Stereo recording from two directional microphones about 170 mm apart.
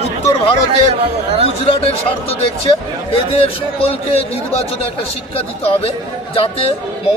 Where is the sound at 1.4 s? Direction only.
35° left (ahead or behind).